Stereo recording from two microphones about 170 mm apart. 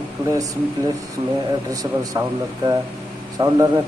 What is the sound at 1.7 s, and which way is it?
Speech, 20° right (ahead or behind).